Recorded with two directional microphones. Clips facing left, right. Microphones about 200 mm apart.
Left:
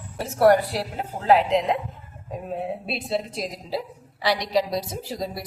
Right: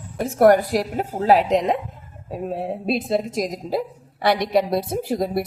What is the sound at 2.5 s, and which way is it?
A woman's voice, 45° right (ahead or behind).